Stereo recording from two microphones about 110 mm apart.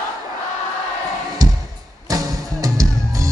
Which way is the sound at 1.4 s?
35° right (ahead or behind).